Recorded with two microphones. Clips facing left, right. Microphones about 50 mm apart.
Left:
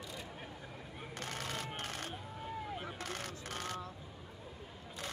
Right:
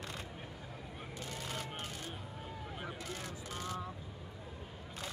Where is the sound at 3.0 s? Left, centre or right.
Left.